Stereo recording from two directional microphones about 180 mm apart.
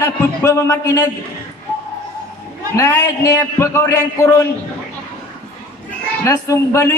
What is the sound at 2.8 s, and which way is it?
A man's voice, 15° left (ahead or behind).